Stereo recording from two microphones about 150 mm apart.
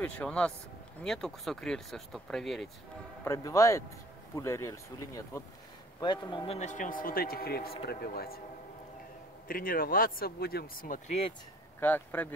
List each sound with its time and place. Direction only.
0.0 s speech: 10° left (ahead or behind)
3.3 s speech: 20° left (ahead or behind); by 8.4 s 90° left
9.5 s speech: 70° left (ahead or behind)
11.1 s speech: 40° left (ahead or behind)
11.8 s speech: 10° left (ahead or behind)